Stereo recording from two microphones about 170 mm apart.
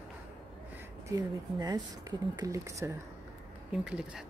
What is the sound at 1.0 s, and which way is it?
Speech, 20° right (ahead or behind).